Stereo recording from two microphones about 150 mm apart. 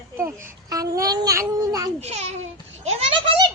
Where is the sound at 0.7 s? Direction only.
25° right (ahead or behind).